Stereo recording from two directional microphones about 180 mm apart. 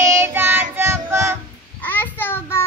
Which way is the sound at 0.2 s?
15° right (ahead or behind).